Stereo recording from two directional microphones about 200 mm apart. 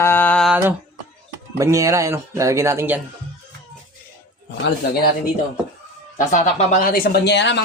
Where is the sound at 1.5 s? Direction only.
15° right (ahead or behind).